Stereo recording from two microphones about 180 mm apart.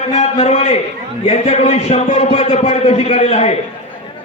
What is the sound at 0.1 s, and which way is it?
A man's voice, 35° left (ahead or behind).